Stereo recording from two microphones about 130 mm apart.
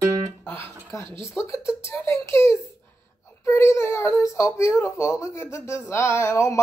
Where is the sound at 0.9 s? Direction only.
20° left (ahead or behind).